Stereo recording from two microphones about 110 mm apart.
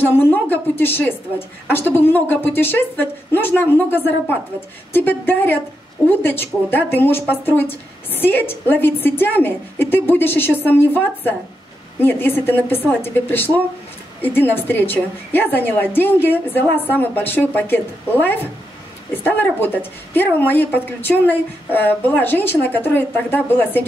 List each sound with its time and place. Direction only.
0.1 s a woman's voice: 20° left (ahead or behind)